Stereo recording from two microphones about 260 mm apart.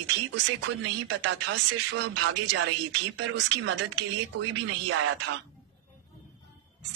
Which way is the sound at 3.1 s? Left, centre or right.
Right.